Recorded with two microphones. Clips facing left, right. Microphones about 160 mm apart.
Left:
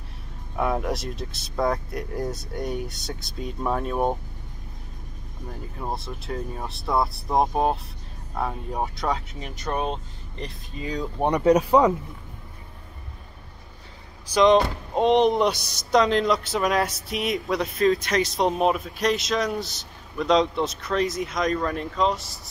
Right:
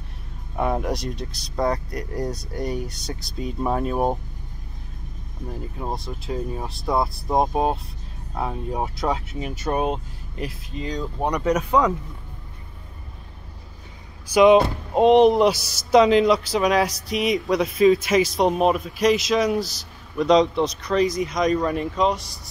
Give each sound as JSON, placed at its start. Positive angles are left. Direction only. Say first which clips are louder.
{"t": 0.6, "sound": "speech", "louder": "right 1 dB", "side_deg": 0}
{"t": 5.8, "sound": "speech", "louder": "even", "side_deg": 0}
{"t": 11.2, "sound": "speech", "louder": "left 4 dB", "side_deg": 30}
{"t": 14.3, "sound": "speech", "louder": "right 3 dB", "side_deg": -10}